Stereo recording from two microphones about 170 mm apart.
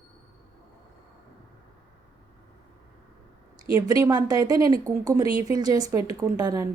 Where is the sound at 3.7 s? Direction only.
20° right (ahead or behind).